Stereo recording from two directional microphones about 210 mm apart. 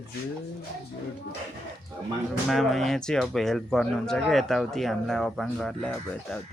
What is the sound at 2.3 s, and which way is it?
Speech, centre (ahead or behind).